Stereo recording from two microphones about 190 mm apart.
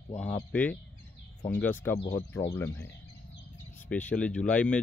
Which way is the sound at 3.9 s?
5° left (ahead or behind).